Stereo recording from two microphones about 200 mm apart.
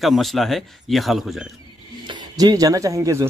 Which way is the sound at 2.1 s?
20° right (ahead or behind).